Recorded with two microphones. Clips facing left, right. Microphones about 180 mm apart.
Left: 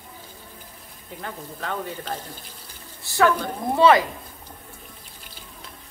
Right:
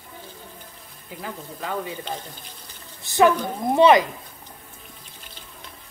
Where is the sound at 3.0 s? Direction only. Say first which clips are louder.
Right 2 dB; 20° right (ahead or behind).